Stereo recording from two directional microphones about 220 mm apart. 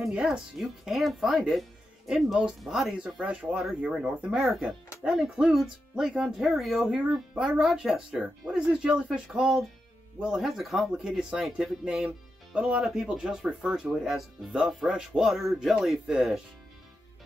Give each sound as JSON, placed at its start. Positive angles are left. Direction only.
{"t": 0.0, "sound": "speech", "side_deg": 0}